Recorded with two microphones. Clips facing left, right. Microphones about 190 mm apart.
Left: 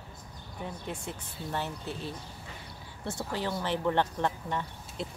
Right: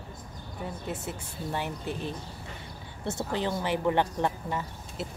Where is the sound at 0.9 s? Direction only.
10° right (ahead or behind).